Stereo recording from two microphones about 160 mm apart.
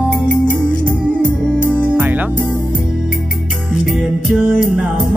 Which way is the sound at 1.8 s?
10° right (ahead or behind).